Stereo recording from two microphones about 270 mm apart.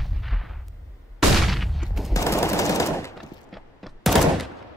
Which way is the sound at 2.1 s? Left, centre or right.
Centre.